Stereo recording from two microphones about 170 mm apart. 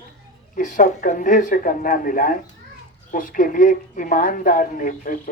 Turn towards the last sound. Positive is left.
turn(degrees=55)  # may be behind; listen again after turning